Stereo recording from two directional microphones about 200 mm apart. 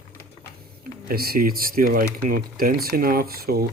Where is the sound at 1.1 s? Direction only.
50° right (ahead or behind).